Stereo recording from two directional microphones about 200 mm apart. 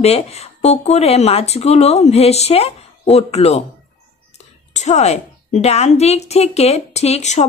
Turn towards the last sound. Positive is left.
turn(degrees=35)  # may be behind; listen again after turning